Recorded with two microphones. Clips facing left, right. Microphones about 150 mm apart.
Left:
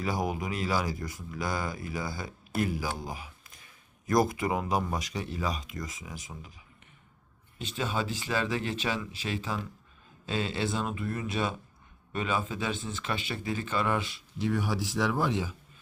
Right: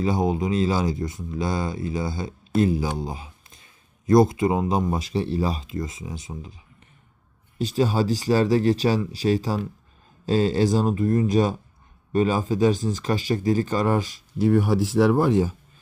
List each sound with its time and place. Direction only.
0.0 s speech: 25° right (ahead or behind)
7.6 s speech: 35° right (ahead or behind)